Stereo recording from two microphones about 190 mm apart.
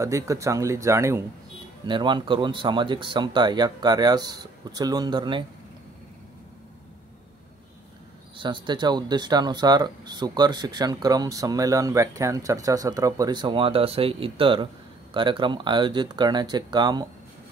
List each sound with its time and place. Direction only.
0.0 s speech: 15° right (ahead or behind)
1.9 s speech: 25° right (ahead or behind)
8.4 s speech: 25° right (ahead or behind)